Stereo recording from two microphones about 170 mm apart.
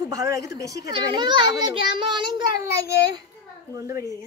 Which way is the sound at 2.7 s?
70° left (ahead or behind).